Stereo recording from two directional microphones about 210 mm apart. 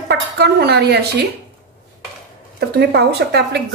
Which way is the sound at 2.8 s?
55° right (ahead or behind).